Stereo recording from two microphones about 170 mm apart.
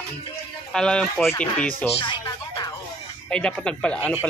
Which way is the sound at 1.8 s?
30° left (ahead or behind).